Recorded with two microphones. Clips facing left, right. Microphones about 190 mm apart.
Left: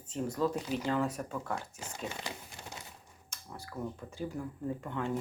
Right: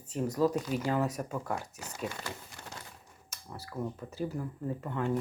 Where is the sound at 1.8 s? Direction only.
20° left (ahead or behind).